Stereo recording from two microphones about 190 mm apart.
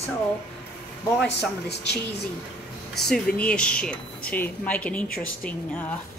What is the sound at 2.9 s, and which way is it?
A woman's voice, 5° left (ahead or behind).